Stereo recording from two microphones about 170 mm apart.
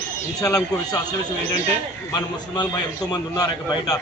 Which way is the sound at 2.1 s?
25° left (ahead or behind).